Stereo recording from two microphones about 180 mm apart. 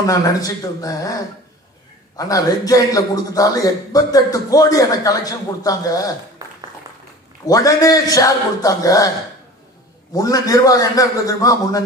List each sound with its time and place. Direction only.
0.0 s a man's voice: 20° left (ahead or behind)
6.4 s a sound: 20° right (ahead or behind)
7.4 s a man's voice: 20° left (ahead or behind)
10.1 s a man's voice: 20° left (ahead or behind)